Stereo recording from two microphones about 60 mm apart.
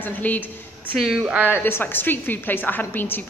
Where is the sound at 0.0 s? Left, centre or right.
Left.